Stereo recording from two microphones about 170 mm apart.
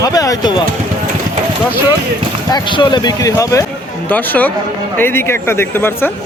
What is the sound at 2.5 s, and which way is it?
Speech, 25° left (ahead or behind).